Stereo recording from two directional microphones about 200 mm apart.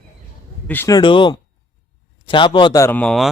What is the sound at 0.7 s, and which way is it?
A man's voice, 15° left (ahead or behind).